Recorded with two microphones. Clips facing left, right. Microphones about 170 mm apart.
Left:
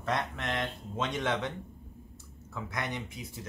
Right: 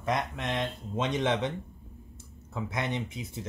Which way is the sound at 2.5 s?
25° right (ahead or behind).